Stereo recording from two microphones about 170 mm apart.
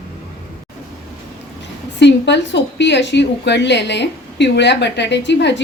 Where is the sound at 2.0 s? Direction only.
90° left.